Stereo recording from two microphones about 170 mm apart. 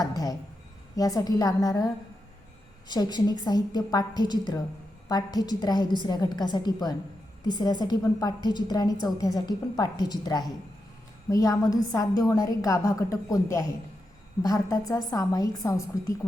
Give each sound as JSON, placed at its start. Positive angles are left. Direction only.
{"t": 0.0, "sound": "a sound", "side_deg": 20}
{"t": 0.9, "sound": "a woman's voice", "side_deg": 20}
{"t": 2.9, "sound": "a woman's voice", "side_deg": 25}